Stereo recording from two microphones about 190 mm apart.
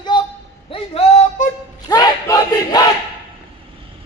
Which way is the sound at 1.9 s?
20° left (ahead or behind).